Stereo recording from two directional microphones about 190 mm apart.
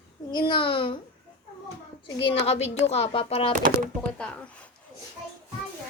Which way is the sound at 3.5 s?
45° right (ahead or behind).